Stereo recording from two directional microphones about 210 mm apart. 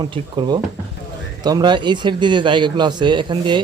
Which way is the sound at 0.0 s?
20° right (ahead or behind).